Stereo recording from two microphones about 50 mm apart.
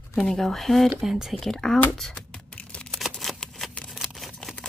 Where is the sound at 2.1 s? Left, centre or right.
Left.